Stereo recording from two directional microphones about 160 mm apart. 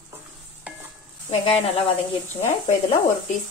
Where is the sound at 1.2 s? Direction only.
40° left (ahead or behind).